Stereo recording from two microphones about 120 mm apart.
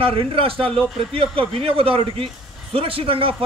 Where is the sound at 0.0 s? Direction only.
50° right (ahead or behind).